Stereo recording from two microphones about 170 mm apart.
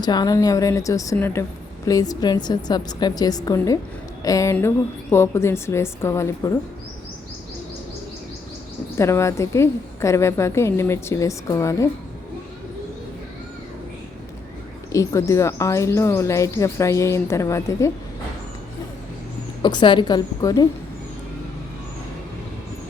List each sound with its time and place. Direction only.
0.0 s a woman's voice: 25° left (ahead or behind)
9.0 s speech: 15° left (ahead or behind)
14.9 s speech: 15° left (ahead or behind)
19.6 s a woman's voice: 25° left (ahead or behind)